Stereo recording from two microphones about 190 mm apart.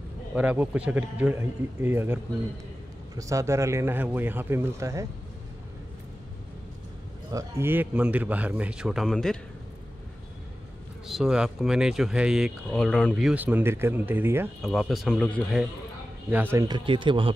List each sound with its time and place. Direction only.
0.3 s a man's voice: 5° right (ahead or behind)
3.2 s a man's voice: 15° right (ahead or behind)
7.3 s a man's voice: 15° right (ahead or behind); by 9.4 s 5° left (ahead or behind)
11.1 s speech: 5° right (ahead or behind)
14.6 s speech: centre (ahead or behind)
16.5 s speech: 20° right (ahead or behind)